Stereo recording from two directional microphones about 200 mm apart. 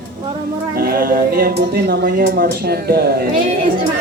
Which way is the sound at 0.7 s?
50° right (ahead or behind).